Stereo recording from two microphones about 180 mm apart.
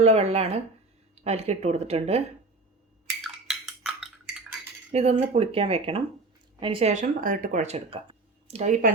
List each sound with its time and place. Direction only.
0.0 s speech: 35° right (ahead or behind)
3.2 s dishes: centre (ahead or behind)
4.9 s cutlery: 40° right (ahead or behind)
5.3 s speech: 35° right (ahead or behind)